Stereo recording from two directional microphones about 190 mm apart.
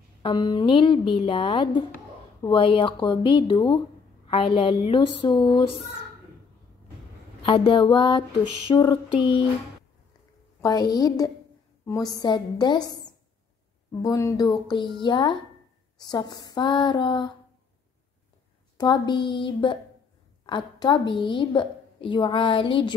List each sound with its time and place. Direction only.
0.2 s a woman's voice: 25° left (ahead or behind)
7.4 s a woman's voice: 25° left (ahead or behind)
10.6 s a woman's voice: 20° left (ahead or behind)
14.0 s a woman's voice: 15° left (ahead or behind)
18.8 s a woman's voice: 25° left (ahead or behind)